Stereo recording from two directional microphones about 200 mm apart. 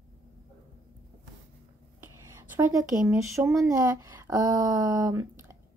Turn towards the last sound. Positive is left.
turn(degrees=-15)  # may be behind; listen again after turning